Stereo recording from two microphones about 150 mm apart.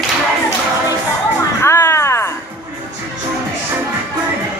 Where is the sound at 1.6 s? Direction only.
20° left (ahead or behind).